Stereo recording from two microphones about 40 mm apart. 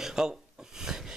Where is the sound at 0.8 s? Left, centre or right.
Centre.